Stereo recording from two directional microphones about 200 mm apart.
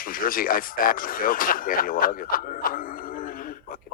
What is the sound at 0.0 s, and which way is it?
Speech, 45° left (ahead or behind).